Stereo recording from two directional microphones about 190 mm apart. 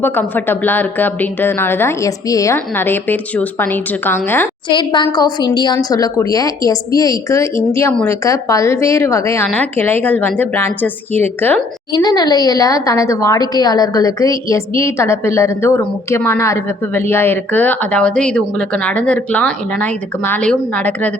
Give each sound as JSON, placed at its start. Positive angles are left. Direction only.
{"t": 0.0, "sound": "a woman's voice", "side_deg": 10}
{"t": 4.7, "sound": "a woman's voice", "side_deg": 25}
{"t": 11.9, "sound": "a woman's voice", "side_deg": 20}